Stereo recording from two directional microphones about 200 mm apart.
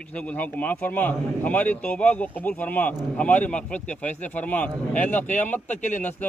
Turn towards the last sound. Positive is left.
turn(degrees=35)  # may be behind; listen again after turning